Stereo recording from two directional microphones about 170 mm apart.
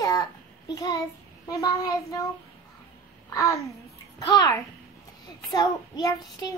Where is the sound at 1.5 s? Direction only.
20° left (ahead or behind).